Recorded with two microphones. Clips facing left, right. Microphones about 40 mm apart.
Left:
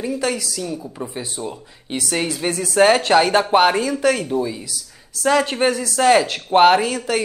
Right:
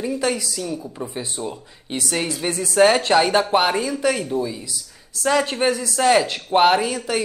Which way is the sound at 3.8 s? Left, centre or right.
Centre.